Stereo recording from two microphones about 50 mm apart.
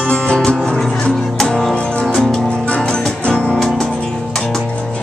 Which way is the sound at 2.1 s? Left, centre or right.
Centre.